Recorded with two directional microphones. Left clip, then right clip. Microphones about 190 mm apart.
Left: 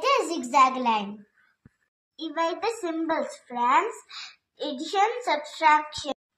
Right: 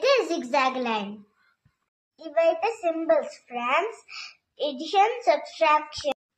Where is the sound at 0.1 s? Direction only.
15° right (ahead or behind).